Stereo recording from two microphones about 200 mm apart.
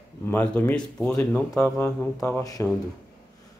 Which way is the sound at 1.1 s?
15° left (ahead or behind).